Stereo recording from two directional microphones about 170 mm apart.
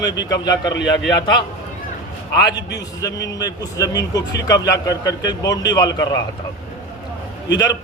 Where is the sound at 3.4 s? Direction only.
20° left (ahead or behind).